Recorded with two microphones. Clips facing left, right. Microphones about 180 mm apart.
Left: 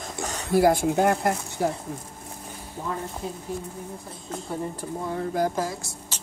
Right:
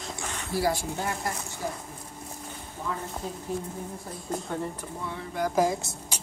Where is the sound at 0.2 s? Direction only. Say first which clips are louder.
Left 9 dB; 40° left (ahead or behind).